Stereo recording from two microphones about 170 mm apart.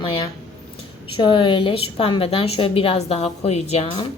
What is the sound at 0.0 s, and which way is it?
A woman's voice, 30° left (ahead or behind).